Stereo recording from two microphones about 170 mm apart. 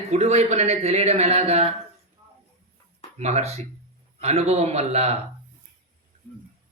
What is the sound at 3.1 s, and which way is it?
Speech, 40° right (ahead or behind).